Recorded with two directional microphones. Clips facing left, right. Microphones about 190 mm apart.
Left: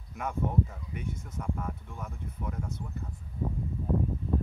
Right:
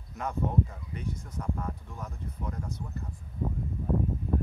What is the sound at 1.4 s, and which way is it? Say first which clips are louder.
Speech: right 1 dB; 5° left (ahead or behind).